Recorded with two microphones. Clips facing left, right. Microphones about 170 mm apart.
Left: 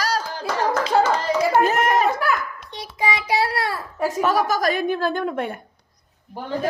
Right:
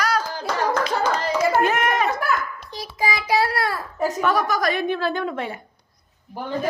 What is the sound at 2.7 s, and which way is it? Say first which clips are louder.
Child singing: even; 30° right (ahead or behind).